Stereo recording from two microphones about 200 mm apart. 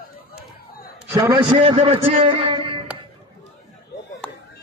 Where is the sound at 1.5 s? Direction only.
25° right (ahead or behind).